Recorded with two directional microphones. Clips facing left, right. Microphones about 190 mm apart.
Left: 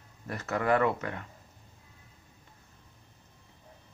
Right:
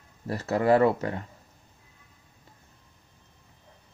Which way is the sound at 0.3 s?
30° right (ahead or behind).